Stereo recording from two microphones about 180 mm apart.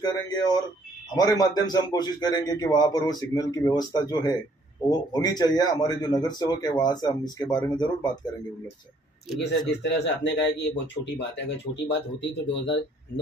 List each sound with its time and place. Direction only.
0.0 s a man's voice: 20° left (ahead or behind)
9.7 s speech: 75° left (ahead or behind)